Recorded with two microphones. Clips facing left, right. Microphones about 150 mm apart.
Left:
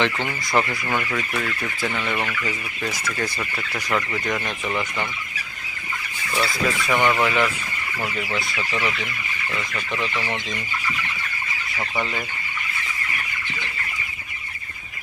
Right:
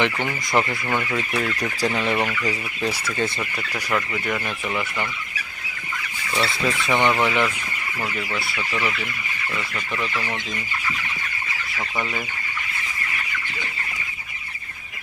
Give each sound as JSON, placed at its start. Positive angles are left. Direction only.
{"t": 0.0, "sound": "speech", "side_deg": -15}
{"t": 1.8, "sound": "speech", "side_deg": -30}
{"t": 3.9, "sound": "speech", "side_deg": 0}
{"t": 6.3, "sound": "speech", "side_deg": 0}
{"t": 6.8, "sound": "speech", "side_deg": -20}
{"t": 8.0, "sound": "speech", "side_deg": 0}
{"t": 9.7, "sound": "speech", "side_deg": -5}